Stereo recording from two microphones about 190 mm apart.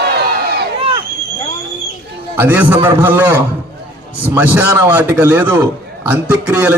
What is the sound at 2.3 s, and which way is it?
A man's voice, 10° right (ahead or behind).